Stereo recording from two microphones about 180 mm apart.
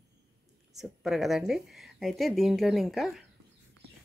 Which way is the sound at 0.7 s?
Centre (ahead or behind).